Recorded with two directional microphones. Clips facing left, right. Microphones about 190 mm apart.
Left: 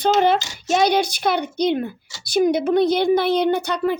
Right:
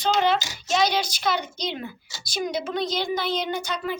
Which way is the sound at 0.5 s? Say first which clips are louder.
Left 5 dB; 55° left (ahead or behind).